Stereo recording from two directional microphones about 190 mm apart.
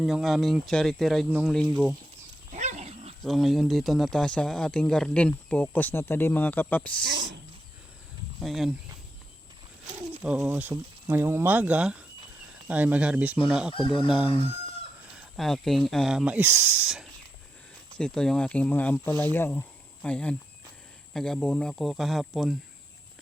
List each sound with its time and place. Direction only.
0.0 s speech: centre (ahead or behind)
2.5 s dog: 40° right (ahead or behind)
3.2 s speech: centre (ahead or behind)
7.0 s speech: 65° right (ahead or behind)
8.4 s speech: centre (ahead or behind)
10.2 s speech: 5° right (ahead or behind)
13.7 s speech: 25° left (ahead or behind)
15.0 s speech: 5° right (ahead or behind)